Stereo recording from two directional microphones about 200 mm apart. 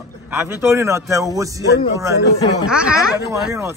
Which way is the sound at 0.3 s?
10° right (ahead or behind).